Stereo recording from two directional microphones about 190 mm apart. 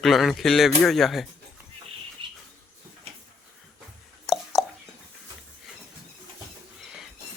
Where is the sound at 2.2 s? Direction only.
25° right (ahead or behind).